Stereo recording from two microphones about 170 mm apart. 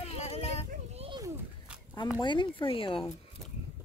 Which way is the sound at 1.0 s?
30° right (ahead or behind).